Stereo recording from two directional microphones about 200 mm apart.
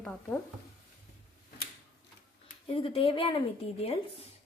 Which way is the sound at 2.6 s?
25° left (ahead or behind).